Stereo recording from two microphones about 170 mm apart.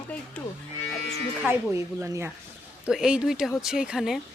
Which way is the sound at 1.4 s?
10° right (ahead or behind).